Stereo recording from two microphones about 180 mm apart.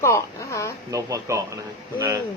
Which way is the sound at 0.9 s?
20° right (ahead or behind).